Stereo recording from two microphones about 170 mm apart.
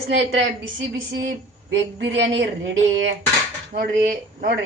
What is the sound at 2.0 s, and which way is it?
A woman's voice, 90° right.